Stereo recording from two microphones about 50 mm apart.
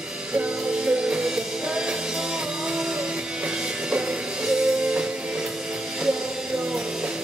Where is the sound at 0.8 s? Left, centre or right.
Centre.